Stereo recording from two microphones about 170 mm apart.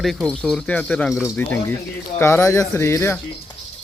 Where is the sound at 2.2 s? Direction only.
15° left (ahead or behind).